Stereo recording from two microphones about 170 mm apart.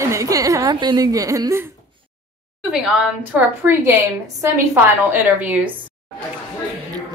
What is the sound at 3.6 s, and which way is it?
A woman's voice, 15° right (ahead or behind).